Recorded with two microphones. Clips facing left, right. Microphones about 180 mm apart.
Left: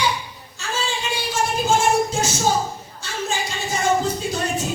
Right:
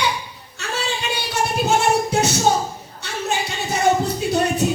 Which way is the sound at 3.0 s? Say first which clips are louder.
Right 2 dB; 65° right (ahead or behind).